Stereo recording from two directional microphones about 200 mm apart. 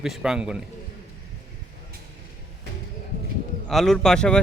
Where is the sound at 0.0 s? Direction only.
5° right (ahead or behind).